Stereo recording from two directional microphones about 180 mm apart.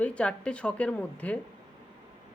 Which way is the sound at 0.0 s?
5° left (ahead or behind).